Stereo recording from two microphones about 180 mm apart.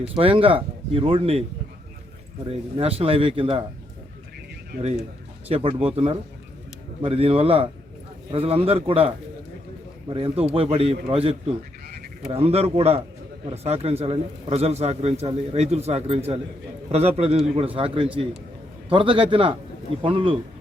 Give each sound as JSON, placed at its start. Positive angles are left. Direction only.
{"t": 0.2, "sound": "a man's voice", "side_deg": -30}
{"t": 2.5, "sound": "a man's voice", "side_deg": -35}
{"t": 5.5, "sound": "a man's voice", "side_deg": -30}